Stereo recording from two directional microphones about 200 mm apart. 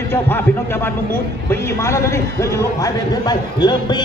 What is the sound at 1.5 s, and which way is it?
A man's voice, 15° left (ahead or behind).